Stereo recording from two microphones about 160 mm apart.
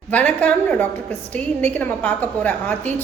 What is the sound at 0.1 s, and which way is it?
A woman's voice, 10° left (ahead or behind).